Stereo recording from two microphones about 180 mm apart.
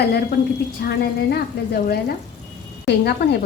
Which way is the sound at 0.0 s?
65° left (ahead or behind).